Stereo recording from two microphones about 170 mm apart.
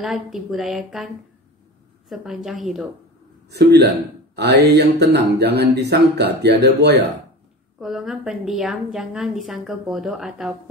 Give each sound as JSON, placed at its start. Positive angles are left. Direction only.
{"t": 0.0, "sound": "a woman's voice", "side_deg": 0}
{"t": 3.4, "sound": "speech", "side_deg": -75}
{"t": 7.8, "sound": "a woman's voice", "side_deg": 0}